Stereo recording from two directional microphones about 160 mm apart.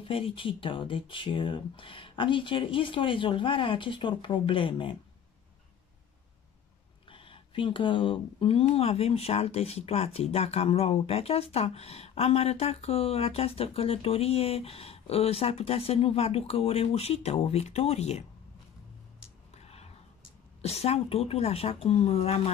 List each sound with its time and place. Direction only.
0.0 s speech: 35° left (ahead or behind)
7.1 s speech: 35° left (ahead or behind)
19.5 s a sound: 40° left (ahead or behind)
20.6 s speech: 40° left (ahead or behind)